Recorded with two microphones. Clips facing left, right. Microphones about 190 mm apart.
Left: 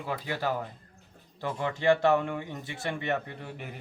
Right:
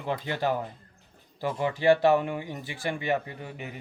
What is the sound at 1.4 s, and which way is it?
Speech, 10° right (ahead or behind).